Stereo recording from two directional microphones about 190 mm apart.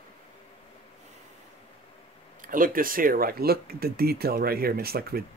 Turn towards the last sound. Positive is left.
turn(degrees=-50)  # may be behind; listen again after turning